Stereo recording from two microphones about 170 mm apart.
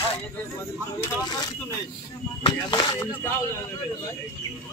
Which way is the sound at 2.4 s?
30° left (ahead or behind).